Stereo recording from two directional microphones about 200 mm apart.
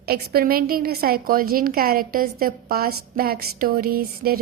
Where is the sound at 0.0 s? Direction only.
50° right (ahead or behind).